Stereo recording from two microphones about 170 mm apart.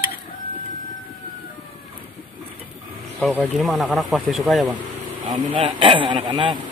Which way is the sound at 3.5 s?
Centre (ahead or behind).